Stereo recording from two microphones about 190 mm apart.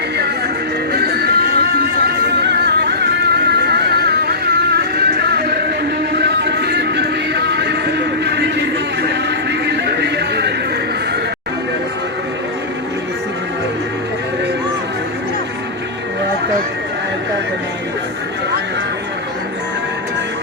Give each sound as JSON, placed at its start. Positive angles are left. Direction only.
{"t": 0.9, "sound": "music", "side_deg": -55}